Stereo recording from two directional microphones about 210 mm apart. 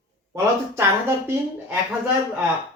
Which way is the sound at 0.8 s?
10° right (ahead or behind).